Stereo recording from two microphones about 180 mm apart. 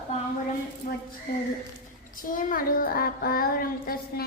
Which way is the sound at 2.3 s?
50° left (ahead or behind).